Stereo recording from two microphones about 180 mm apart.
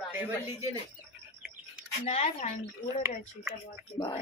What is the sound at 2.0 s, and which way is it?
Speech, 35° left (ahead or behind).